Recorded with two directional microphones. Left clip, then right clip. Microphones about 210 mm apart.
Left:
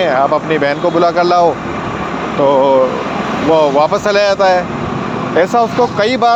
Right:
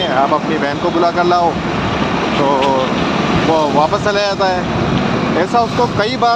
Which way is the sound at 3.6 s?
50° left (ahead or behind).